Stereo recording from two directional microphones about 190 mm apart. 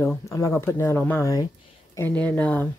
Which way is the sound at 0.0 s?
15° left (ahead or behind).